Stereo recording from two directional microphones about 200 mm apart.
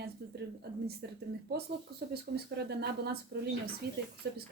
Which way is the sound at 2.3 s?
55° right (ahead or behind).